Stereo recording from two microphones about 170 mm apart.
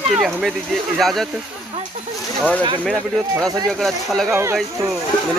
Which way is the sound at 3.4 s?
20° right (ahead or behind).